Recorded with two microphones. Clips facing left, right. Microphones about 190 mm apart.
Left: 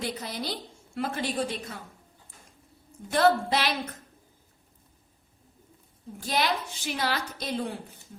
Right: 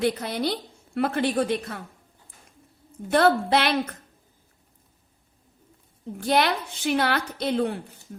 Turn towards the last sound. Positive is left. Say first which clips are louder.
# right 7 dB
turn(degrees=-60)  # may be behind; listen again after turning